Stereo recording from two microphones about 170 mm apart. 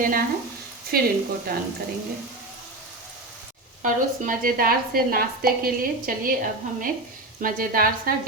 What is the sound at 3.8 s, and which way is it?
A woman's voice, 55° right (ahead or behind).